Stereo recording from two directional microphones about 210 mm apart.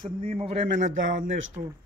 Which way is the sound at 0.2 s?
30° right (ahead or behind).